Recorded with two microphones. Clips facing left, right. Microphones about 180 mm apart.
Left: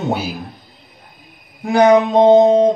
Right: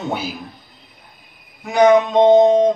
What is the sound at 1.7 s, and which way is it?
Music, 35° left (ahead or behind).